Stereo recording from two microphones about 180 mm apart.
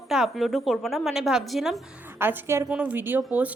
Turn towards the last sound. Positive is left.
turn(degrees=-5)  # may be behind; listen again after turning